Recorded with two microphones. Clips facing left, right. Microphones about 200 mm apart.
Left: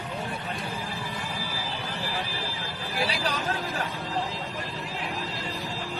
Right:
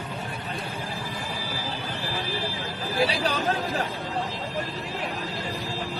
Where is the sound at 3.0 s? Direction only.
30° right (ahead or behind).